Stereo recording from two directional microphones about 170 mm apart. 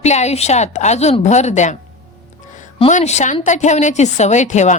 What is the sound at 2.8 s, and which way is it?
Speech, 40° left (ahead or behind).